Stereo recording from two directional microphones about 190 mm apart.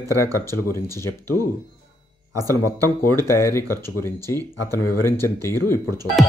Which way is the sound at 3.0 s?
15° left (ahead or behind).